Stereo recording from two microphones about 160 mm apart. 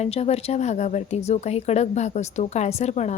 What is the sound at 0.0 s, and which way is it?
A woman's voice, 40° left (ahead or behind).